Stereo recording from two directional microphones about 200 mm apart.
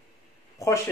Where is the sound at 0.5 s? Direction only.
15° left (ahead or behind).